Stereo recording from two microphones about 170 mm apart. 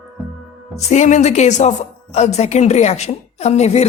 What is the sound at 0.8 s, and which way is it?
A woman's voice, 40° left (ahead or behind).